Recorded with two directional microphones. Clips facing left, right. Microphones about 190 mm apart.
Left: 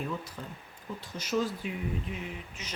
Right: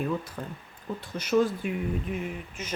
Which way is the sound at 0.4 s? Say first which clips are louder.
Right 5 dB; 55° right (ahead or behind).